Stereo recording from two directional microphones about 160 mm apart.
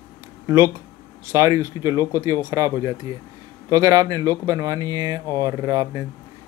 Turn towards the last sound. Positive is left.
turn(degrees=-20)  # may be behind; listen again after turning